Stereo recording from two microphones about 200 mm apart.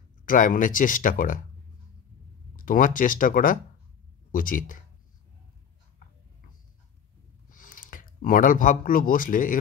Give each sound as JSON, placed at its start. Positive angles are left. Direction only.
{"t": 0.2, "sound": "speech", "side_deg": 40}
{"t": 2.5, "sound": "speech", "side_deg": 45}
{"t": 7.4, "sound": "speech", "side_deg": 45}